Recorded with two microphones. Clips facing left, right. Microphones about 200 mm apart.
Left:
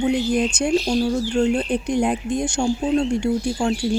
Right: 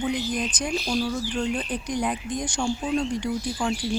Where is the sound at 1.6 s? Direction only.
30° left (ahead or behind).